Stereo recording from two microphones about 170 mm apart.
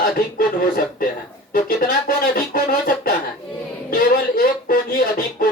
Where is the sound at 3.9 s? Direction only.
60° left (ahead or behind).